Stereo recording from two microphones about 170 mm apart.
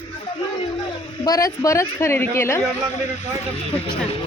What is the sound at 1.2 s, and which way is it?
A woman's voice, 20° left (ahead or behind).